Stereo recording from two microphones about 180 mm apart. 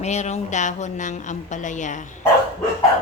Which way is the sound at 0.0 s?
40° left (ahead or behind).